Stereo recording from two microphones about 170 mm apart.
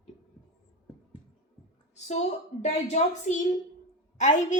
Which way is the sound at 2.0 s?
45° left (ahead or behind).